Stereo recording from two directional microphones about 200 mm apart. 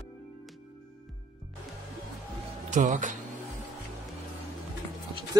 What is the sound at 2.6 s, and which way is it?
Speech, 40° right (ahead or behind).